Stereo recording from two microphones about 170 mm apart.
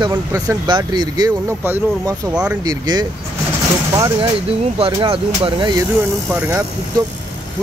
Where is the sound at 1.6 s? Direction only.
10° right (ahead or behind).